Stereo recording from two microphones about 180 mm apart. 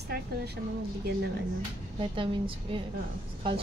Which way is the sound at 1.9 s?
30° right (ahead or behind).